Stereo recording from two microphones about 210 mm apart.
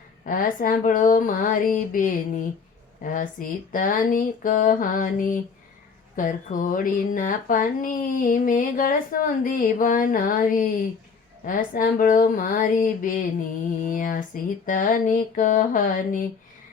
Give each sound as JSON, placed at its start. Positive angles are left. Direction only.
{"t": 0.3, "sound": "speech", "side_deg": 40}